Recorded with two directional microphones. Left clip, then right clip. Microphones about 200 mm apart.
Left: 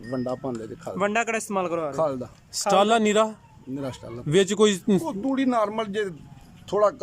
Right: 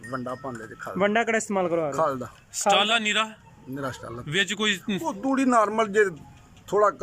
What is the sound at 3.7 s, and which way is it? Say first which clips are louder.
Speech: right 1 dB; 10° left (ahead or behind).